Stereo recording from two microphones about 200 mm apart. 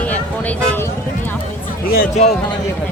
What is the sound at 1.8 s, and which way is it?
Speech, 50° left (ahead or behind).